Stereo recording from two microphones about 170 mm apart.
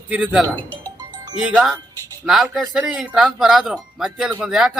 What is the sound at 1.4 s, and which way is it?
A man's voice, 5° right (ahead or behind).